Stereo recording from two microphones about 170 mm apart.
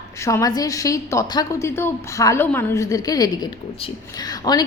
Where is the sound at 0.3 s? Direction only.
20° left (ahead or behind).